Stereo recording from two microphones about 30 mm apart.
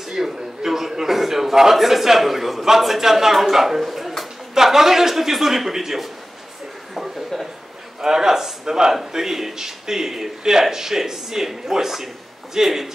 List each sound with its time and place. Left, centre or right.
0.1 s a sound: centre
1.8 s a man's voice: centre
8.0 s a man's voice: centre